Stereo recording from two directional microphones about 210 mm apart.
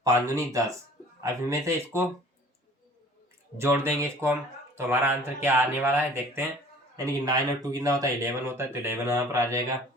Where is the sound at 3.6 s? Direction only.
10° right (ahead or behind).